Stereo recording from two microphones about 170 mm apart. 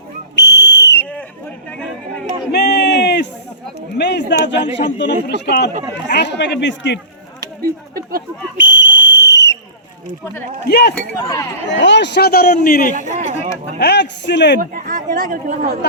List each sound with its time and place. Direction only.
0.3 s whistle: 90° left
2.5 s a sound: 80° left
4.9 s speech: 90° left
7.6 s speech: 60° right (ahead or behind)
8.5 s whistle: 90° left
10.7 s a man's voice: 75° left (ahead or behind)
10.9 s speech: 15° left (ahead or behind)
11.8 s a man's voice: 90° left; by 13.3 s 45° left (ahead or behind)
13.7 s speech: 85° left
14.6 s speech: 55° right (ahead or behind)